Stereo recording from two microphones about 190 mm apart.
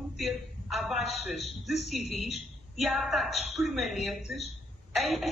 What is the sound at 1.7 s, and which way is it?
Speech, 35° left (ahead or behind).